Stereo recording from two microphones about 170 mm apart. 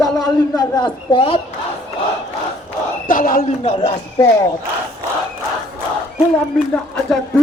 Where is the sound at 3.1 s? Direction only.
55° left (ahead or behind).